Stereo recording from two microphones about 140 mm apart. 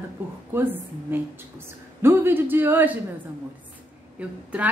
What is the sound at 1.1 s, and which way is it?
A woman's voice, 15° right (ahead or behind).